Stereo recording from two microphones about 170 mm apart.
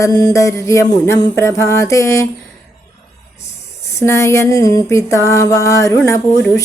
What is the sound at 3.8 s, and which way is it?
Speech, 15° left (ahead or behind).